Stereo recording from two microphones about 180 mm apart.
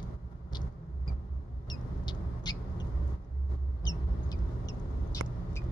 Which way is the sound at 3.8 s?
20° left (ahead or behind).